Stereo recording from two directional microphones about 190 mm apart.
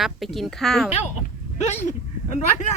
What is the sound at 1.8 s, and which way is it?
Speech, 40° left (ahead or behind).